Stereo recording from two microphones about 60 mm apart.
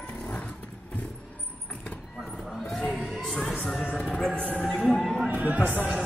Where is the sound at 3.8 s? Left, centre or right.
Centre.